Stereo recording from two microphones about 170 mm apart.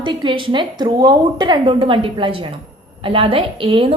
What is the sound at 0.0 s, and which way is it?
A woman's voice, 30° right (ahead or behind).